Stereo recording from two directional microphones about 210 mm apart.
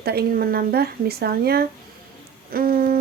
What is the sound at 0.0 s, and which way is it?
Speech, 50° right (ahead or behind).